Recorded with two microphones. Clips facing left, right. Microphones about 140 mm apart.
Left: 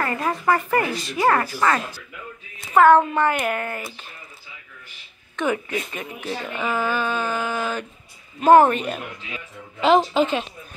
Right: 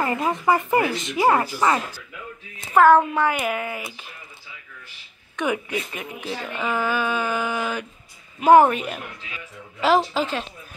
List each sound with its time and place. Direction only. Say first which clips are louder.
0.0 s speech: right 1 dB; 20° right (ahead or behind)
2.8 s speech: left 1 dB; 5° right (ahead or behind)
5.3 s speech: left 1 dB; 10° right (ahead or behind)
6.4 s speech: even; 5° left (ahead or behind)
6.9 s speech: even; 10° right (ahead or behind)